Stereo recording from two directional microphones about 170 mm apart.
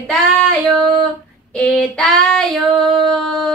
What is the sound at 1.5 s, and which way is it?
Speech, 5° left (ahead or behind).